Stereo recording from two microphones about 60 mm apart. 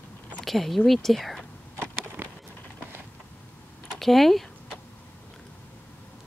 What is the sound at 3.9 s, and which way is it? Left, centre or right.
Speech, centre.